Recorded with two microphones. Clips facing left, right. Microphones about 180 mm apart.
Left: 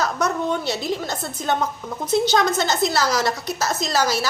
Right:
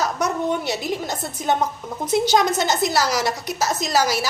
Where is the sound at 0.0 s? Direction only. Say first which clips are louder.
Even; 15° right (ahead or behind).